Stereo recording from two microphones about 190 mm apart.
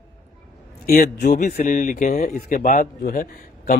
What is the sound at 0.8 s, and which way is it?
A man's voice, 45° left (ahead or behind).